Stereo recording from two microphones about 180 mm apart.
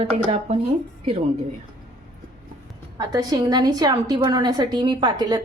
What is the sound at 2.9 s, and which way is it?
A woman's voice, 20° right (ahead or behind).